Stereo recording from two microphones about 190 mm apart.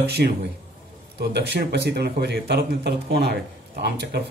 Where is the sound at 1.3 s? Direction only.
60° right (ahead or behind).